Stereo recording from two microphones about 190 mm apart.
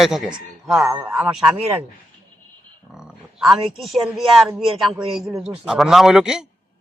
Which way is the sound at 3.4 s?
Centre (ahead or behind).